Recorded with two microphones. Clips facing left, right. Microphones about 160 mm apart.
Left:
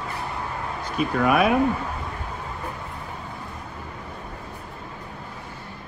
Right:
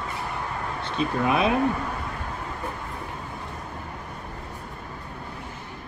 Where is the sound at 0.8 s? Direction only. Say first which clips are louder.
Left 3 dB; 30° right (ahead or behind).